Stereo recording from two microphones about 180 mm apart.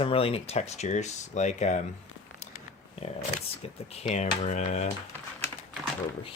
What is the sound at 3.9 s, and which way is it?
Speech, 40° left (ahead or behind).